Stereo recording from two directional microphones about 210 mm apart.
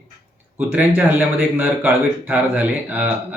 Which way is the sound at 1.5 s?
5° right (ahead or behind).